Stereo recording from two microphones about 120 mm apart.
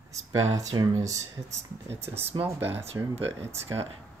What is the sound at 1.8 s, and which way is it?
Speech, 20° right (ahead or behind).